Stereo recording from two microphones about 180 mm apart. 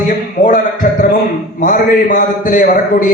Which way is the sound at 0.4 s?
50° left (ahead or behind).